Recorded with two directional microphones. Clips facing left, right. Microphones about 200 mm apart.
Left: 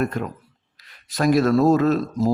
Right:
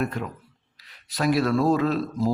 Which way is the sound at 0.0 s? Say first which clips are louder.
Left 4 dB; 45° left (ahead or behind).